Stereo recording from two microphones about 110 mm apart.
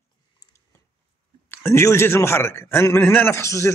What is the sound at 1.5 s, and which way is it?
A man's voice, 25° left (ahead or behind).